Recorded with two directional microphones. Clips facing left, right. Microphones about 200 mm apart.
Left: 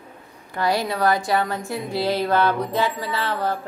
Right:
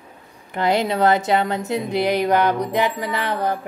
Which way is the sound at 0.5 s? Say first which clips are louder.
Right 3 dB; 20° right (ahead or behind).